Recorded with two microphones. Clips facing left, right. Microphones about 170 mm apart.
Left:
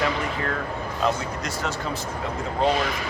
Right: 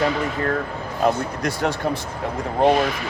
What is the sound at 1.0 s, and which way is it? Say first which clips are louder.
Speech: right 5 dB; 60° right (ahead or behind).